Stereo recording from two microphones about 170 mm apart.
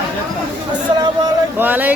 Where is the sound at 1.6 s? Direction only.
10° right (ahead or behind).